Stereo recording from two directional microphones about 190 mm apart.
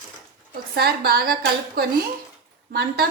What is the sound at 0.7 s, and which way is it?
A woman's voice, 55° right (ahead or behind).